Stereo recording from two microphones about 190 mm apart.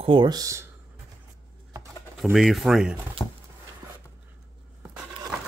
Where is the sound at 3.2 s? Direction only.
15° left (ahead or behind).